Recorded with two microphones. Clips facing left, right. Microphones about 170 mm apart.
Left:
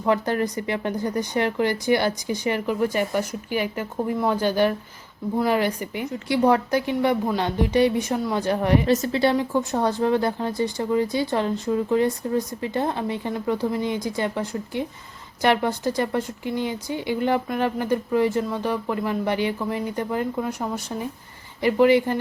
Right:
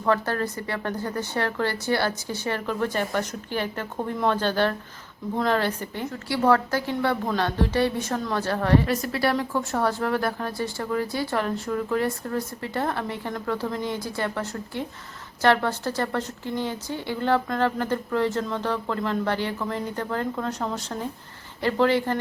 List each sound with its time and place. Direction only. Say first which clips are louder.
0.0 s a woman's voice: left 2 dB; 15° left (ahead or behind)